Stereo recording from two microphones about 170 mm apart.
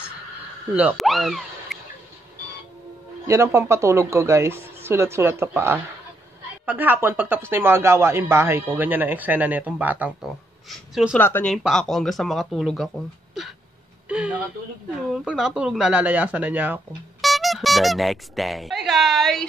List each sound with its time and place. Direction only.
0.7 s speech: 5° right (ahead or behind)
3.3 s speech: 15° right (ahead or behind); by 11.1 s centre (ahead or behind)
11.1 s speech: 10° left (ahead or behind)
11.5 s speech: centre (ahead or behind)
14.0 s a sound: 5° right (ahead or behind)
15.1 s speech: centre (ahead or behind)